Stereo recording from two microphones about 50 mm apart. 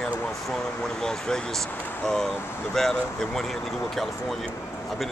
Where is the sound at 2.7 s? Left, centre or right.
Centre.